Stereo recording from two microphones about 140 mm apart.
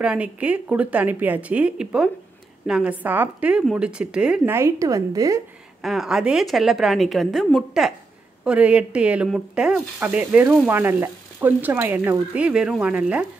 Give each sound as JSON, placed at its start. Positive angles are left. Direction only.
{"t": 0.0, "sound": "speech", "side_deg": -10}
{"t": 4.6, "sound": "a woman's voice", "side_deg": -20}
{"t": 5.8, "sound": "a woman's voice", "side_deg": 0}